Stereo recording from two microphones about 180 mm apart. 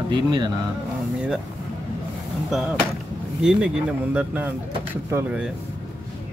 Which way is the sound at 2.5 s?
Centre (ahead or behind).